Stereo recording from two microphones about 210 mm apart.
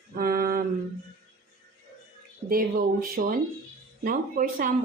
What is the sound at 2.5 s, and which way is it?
Speech, 45° right (ahead or behind).